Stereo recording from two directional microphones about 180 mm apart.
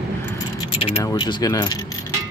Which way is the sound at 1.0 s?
25° left (ahead or behind).